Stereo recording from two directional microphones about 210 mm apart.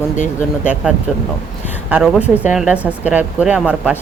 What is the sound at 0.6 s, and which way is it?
Speech, 5° right (ahead or behind).